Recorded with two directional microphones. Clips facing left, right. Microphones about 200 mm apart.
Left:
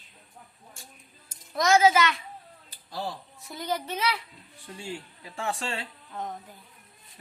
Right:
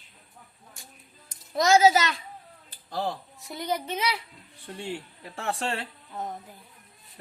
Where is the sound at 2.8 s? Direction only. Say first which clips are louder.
Right 4 dB; 55° right (ahead or behind).